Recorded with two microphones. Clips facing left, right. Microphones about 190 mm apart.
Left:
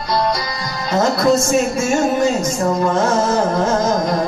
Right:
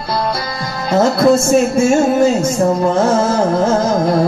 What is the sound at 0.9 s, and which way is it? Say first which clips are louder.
Music: right 4 dB; 30° right (ahead or behind).